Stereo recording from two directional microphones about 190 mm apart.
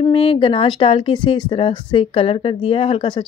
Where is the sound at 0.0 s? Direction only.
30° left (ahead or behind).